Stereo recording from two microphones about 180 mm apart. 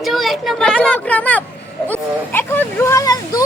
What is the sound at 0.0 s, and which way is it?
Speech, centre (ahead or behind).